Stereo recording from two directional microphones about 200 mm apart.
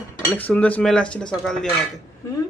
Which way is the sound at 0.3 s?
10° left (ahead or behind).